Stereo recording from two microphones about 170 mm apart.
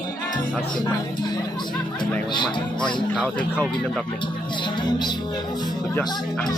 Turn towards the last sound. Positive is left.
turn(degrees=25)  # may be behind; listen again after turning